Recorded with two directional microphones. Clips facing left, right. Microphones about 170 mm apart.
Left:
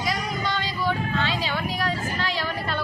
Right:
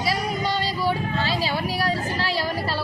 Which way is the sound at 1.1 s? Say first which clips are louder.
Right 2 dB; 35° right (ahead or behind).